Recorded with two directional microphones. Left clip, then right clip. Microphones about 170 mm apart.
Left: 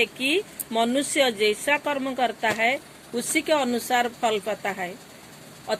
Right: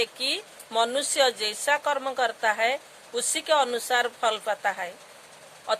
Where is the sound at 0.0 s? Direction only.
25° right (ahead or behind).